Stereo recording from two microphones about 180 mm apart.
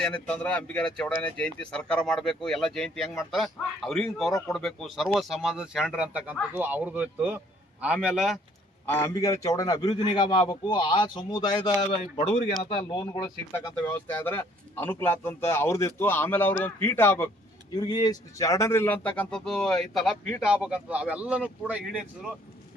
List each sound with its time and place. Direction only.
0.0 s speech: 5° left (ahead or behind)
8.9 s speech: 15° left (ahead or behind); by 12.7 s 35° left (ahead or behind)
12.9 s speech: 20° left (ahead or behind)
13.5 s speech: 10° left (ahead or behind); by 22.0 s 5° right (ahead or behind)